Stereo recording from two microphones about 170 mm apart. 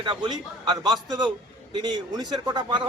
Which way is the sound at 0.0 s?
25° right (ahead or behind).